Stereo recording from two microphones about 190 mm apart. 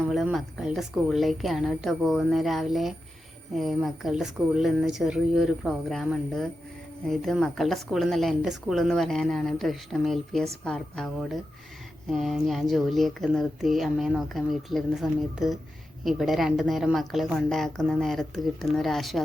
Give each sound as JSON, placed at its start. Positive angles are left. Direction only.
{"t": 0.1, "sound": "a woman's voice", "side_deg": 0}